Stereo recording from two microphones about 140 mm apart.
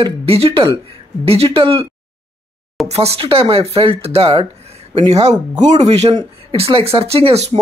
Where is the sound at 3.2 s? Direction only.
40° right (ahead or behind).